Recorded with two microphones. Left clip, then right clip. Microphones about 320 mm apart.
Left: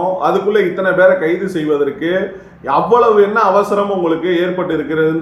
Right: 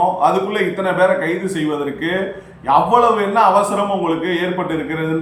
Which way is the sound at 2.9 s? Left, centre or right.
Right.